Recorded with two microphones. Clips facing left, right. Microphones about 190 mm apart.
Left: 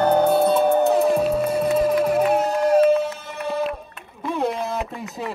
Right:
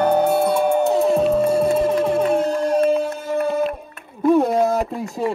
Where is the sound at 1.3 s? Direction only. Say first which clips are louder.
Right 4 dB; 30° right (ahead or behind).